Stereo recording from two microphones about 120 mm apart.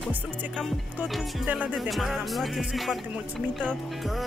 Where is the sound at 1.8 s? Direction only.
Centre (ahead or behind).